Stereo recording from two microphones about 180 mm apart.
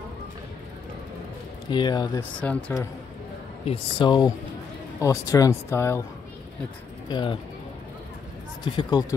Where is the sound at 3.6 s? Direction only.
25° left (ahead or behind).